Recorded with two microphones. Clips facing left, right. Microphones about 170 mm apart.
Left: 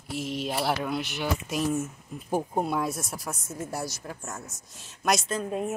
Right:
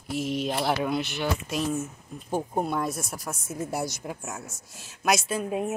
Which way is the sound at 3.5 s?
15° right (ahead or behind).